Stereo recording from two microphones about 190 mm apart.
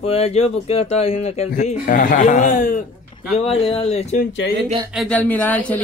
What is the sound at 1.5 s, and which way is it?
A man's voice, 45° left (ahead or behind).